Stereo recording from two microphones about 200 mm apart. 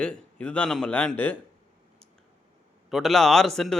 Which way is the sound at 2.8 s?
Centre (ahead or behind).